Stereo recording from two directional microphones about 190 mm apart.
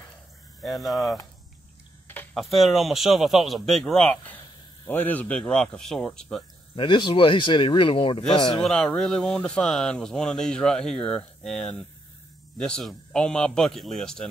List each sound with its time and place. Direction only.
0.6 s a man's voice: centre (ahead or behind)
6.7 s speech: 25° left (ahead or behind)
8.6 s speech: 5° left (ahead or behind)